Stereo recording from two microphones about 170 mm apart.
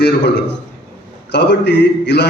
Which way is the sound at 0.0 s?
80° left.